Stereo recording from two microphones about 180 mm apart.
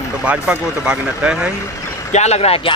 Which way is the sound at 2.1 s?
35° left (ahead or behind).